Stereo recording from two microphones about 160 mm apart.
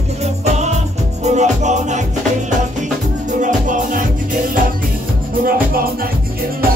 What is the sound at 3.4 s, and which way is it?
Music, 55° right (ahead or behind).